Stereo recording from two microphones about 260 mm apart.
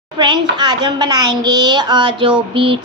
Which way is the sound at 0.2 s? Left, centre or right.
Centre.